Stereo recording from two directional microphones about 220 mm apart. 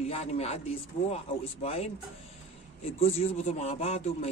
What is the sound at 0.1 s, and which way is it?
A man's voice, 30° left (ahead or behind).